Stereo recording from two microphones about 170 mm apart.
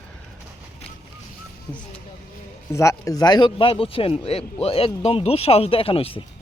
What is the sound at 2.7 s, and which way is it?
Speech, 15° left (ahead or behind).